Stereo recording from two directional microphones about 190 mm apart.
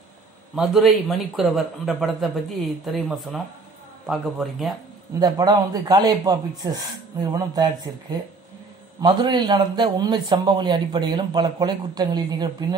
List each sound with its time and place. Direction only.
0.6 s a man's voice: centre (ahead or behind)
5.2 s a man's voice: 20° right (ahead or behind)